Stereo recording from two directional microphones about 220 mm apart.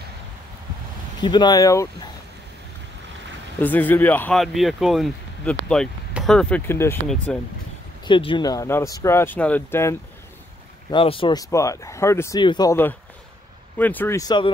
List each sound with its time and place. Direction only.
1.2 s speech: 20° left (ahead or behind)
3.6 s speech: 10° left (ahead or behind)
8.0 s speech: 20° left (ahead or behind)
10.9 s speech: 25° left (ahead or behind)